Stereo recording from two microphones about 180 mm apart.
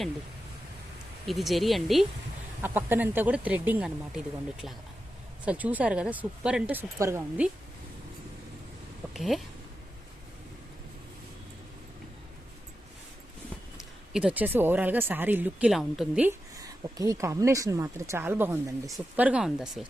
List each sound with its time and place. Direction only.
1.3 s speech: centre (ahead or behind)
2.6 s speech: 10° right (ahead or behind)
9.1 s speech: centre (ahead or behind)
13.7 s speech: 5° right (ahead or behind)
16.6 s speech: 20° right (ahead or behind); by 19.8 s centre (ahead or behind)